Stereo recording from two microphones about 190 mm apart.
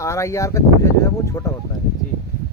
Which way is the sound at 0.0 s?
15° left (ahead or behind).